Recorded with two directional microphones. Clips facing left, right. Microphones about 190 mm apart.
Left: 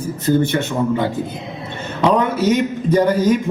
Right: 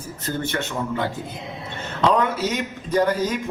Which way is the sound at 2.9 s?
15° left (ahead or behind).